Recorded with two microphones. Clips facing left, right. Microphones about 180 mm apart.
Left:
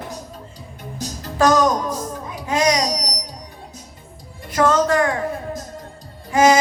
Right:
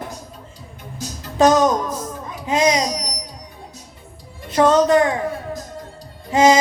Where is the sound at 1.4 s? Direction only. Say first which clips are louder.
Right 2 dB; 20° right (ahead or behind).